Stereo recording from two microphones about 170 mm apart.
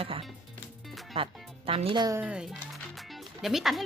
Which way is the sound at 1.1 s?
30° right (ahead or behind).